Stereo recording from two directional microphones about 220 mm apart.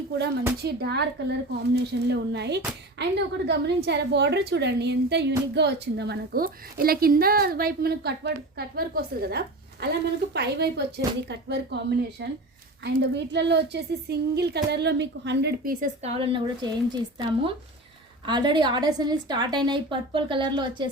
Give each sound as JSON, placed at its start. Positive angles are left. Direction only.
{"t": 0.6, "sound": "a woman's voice", "side_deg": -50}